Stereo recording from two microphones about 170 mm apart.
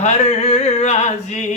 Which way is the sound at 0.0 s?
40° left (ahead or behind).